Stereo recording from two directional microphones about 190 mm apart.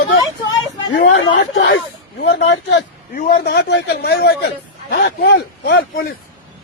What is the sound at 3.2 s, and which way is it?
A man's voice, 50° left (ahead or behind).